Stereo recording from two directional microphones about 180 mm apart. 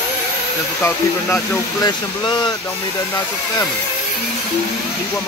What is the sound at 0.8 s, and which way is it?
Speech, 15° left (ahead or behind).